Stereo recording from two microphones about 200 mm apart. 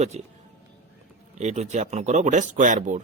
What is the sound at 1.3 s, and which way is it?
Speech, 35° right (ahead or behind).